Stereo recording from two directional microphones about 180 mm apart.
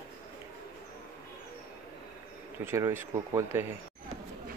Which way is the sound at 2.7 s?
15° right (ahead or behind).